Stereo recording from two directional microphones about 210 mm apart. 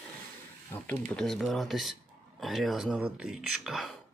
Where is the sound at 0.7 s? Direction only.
10° left (ahead or behind).